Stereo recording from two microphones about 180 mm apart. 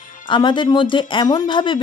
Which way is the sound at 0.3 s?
25° left (ahead or behind).